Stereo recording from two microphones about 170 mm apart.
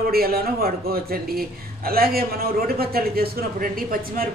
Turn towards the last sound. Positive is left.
turn(degrees=-55)  # may be behind; listen again after turning